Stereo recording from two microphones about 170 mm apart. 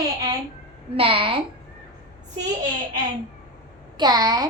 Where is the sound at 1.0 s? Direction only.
35° right (ahead or behind).